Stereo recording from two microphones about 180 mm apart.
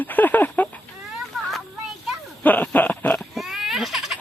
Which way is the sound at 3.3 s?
Centre (ahead or behind).